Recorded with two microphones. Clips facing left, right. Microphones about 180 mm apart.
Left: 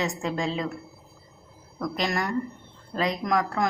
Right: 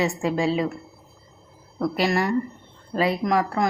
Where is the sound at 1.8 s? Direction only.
5° right (ahead or behind).